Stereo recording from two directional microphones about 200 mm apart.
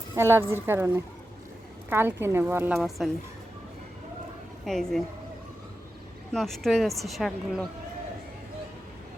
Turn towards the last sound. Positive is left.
turn(degrees=0)  # may be behind; listen again after turning